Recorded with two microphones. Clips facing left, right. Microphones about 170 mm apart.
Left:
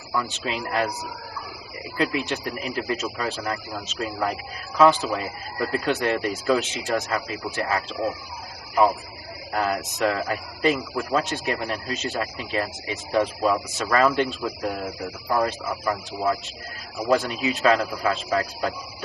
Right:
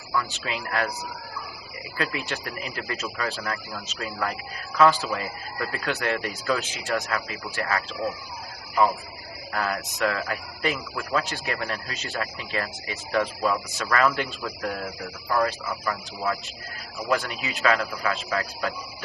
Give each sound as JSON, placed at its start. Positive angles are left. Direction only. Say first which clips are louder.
{"t": 0.1, "sound": "speech", "louder": "left 2 dB", "side_deg": 20}
{"t": 2.0, "sound": "speech", "louder": "left 5 dB", "side_deg": 20}
{"t": 4.8, "sound": "speech", "louder": "left 2 dB", "side_deg": 20}
{"t": 9.6, "sound": "speech", "louder": "left 3 dB", "side_deg": 25}